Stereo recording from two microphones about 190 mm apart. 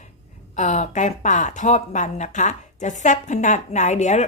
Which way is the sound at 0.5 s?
40° left (ahead or behind).